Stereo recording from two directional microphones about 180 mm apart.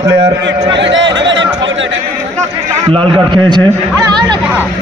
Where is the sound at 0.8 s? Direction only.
90° right.